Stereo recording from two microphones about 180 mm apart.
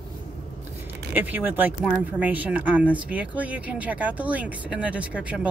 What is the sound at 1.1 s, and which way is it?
Speech, 10° right (ahead or behind).